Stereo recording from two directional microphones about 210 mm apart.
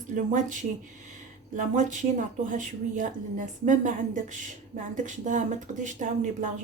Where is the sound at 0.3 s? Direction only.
35° right (ahead or behind).